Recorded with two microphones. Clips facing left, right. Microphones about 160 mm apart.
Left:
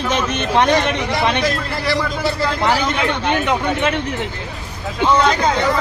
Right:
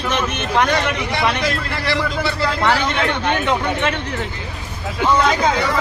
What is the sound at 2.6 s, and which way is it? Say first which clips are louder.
Speech: right 1 dB; 20° left (ahead or behind).